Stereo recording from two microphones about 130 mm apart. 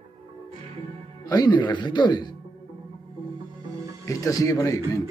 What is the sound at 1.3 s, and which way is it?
Speech, 35° left (ahead or behind).